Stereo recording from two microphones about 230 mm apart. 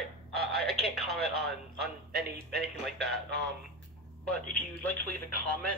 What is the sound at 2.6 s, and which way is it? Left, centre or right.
Speech, centre.